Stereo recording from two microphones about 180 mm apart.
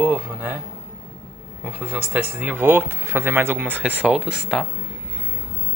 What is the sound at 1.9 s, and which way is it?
Speech, 10° right (ahead or behind).